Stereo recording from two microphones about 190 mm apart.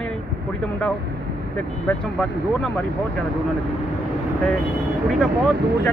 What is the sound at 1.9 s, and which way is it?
Speech, centre (ahead or behind).